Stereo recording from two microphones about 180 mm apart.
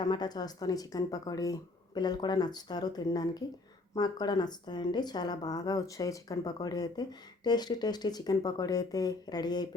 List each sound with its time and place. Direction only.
0.0 s speech: 25° left (ahead or behind)